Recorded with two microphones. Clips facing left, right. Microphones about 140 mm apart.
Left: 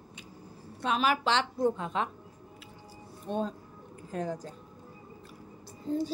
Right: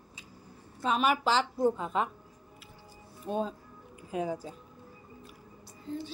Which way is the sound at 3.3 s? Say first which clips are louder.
Even; 5° right (ahead or behind).